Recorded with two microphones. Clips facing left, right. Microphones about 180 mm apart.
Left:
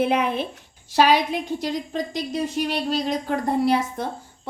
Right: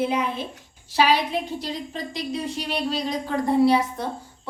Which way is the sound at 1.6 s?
45° left (ahead or behind).